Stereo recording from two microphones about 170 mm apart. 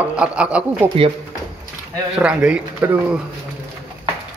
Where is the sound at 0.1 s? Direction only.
5° right (ahead or behind).